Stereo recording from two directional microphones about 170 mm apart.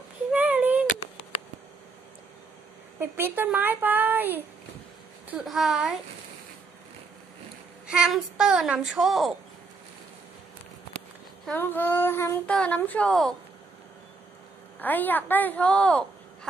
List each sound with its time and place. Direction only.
0.3 s a sound: 10° right (ahead or behind)
3.0 s a woman's voice: 10° right (ahead or behind)
7.8 s speech: 5° right (ahead or behind)
11.4 s child singing: 10° left (ahead or behind)
14.8 s child singing: 10° left (ahead or behind)